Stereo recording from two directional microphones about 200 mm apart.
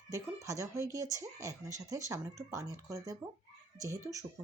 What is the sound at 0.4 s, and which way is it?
Speech, 15° right (ahead or behind).